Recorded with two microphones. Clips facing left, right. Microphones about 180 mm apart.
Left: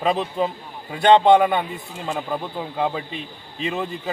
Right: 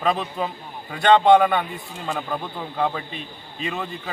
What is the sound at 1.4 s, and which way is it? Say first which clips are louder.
A man's voice: left 1 dB; 15° left (ahead or behind).